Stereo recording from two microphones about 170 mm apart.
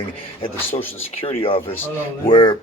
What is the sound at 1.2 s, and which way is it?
Speech, 35° left (ahead or behind).